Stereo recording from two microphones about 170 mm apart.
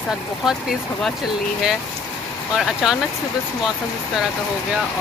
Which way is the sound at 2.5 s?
5° right (ahead or behind).